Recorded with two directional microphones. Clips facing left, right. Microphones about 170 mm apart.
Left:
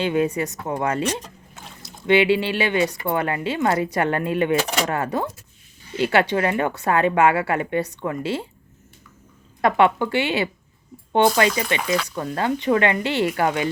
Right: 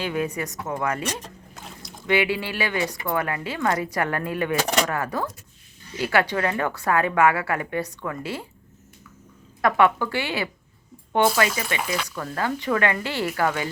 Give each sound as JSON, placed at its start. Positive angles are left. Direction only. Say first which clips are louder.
{"t": 0.0, "sound": "speech", "louder": "left 5 dB", "side_deg": 25}
{"t": 9.6, "sound": "speech", "louder": "left 2 dB", "side_deg": 25}